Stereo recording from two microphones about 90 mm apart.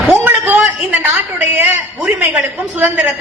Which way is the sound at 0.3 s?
20° right (ahead or behind).